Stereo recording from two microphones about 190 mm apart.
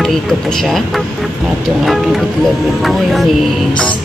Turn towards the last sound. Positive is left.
turn(degrees=0)  # may be behind; listen again after turning